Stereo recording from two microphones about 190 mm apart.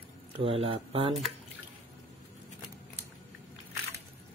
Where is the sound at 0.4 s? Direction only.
30° right (ahead or behind).